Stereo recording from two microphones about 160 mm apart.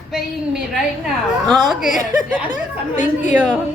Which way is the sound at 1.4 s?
Centre (ahead or behind).